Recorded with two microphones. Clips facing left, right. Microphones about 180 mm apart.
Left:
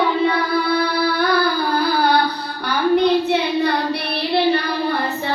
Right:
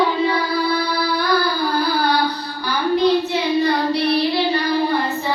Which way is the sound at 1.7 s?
55° left (ahead or behind).